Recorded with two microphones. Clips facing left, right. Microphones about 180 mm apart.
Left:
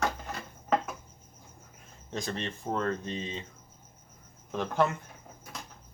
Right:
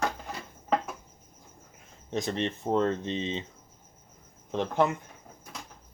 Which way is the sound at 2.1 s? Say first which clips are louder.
Right 5 dB; 20° right (ahead or behind).